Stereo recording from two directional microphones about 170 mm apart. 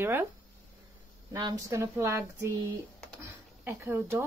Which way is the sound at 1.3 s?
20° right (ahead or behind).